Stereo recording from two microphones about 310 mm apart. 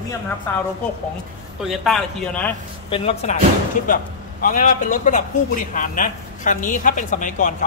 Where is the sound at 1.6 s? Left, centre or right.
Centre.